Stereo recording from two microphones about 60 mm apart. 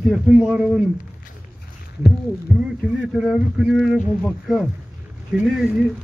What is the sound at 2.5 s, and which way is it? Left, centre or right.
Speech, centre.